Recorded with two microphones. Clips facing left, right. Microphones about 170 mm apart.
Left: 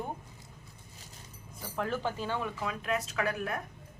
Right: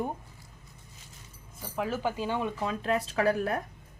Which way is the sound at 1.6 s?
10° right (ahead or behind).